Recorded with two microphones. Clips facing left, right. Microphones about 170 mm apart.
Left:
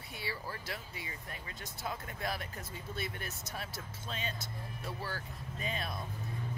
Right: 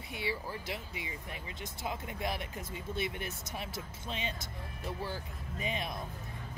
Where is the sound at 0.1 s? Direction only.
20° right (ahead or behind).